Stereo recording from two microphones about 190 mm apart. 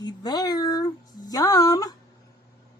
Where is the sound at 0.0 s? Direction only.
20° left (ahead or behind).